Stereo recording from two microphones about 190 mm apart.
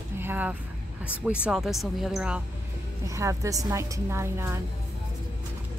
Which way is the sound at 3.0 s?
15° right (ahead or behind).